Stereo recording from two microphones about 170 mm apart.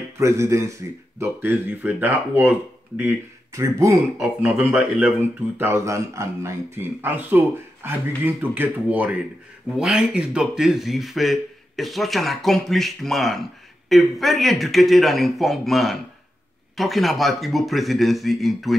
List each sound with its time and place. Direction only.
0.2 s speech: 15° right (ahead or behind); by 18.8 s centre (ahead or behind)